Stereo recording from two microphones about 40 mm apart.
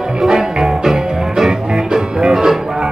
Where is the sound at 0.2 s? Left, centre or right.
Centre.